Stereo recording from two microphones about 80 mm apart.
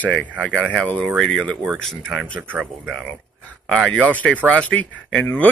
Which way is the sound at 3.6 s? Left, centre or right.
Centre.